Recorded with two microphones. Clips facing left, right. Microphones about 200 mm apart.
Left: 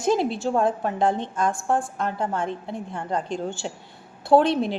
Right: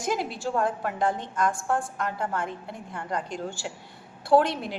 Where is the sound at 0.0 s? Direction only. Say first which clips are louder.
Left 7 dB; 25° left (ahead or behind).